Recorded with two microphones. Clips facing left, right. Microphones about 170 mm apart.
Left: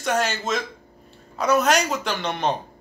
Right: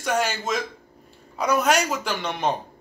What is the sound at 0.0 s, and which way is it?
Speech, 10° right (ahead or behind).